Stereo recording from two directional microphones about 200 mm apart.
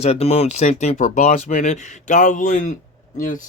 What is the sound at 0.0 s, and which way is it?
Speech, 30° left (ahead or behind).